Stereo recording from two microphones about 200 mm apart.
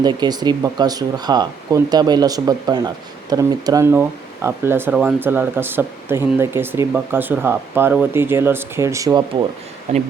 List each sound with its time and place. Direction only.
0.0 s speech: 20° right (ahead or behind)
9.9 s speech: 35° right (ahead or behind)